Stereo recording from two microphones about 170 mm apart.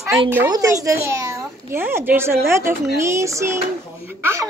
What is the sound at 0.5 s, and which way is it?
A child's voice, 20° right (ahead or behind).